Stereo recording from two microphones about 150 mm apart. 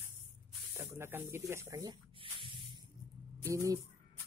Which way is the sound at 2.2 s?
35° right (ahead or behind).